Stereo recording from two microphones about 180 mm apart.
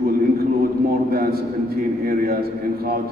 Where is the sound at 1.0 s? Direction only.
55° right (ahead or behind).